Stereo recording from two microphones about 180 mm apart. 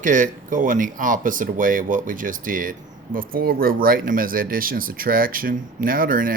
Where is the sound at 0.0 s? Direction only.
45° right (ahead or behind).